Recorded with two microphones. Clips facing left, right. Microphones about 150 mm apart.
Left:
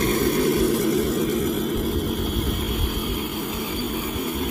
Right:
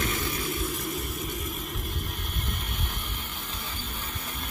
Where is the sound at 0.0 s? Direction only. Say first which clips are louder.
Left 11 dB; 50° left (ahead or behind); by 2.0 s 90° left.